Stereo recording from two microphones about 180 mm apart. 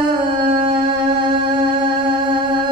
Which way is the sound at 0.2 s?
25° right (ahead or behind).